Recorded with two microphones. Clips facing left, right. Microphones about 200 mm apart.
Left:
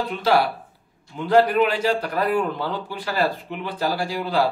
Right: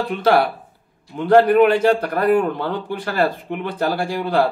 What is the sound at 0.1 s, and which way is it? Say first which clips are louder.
A man's voice: right 4 dB; 55° right (ahead or behind).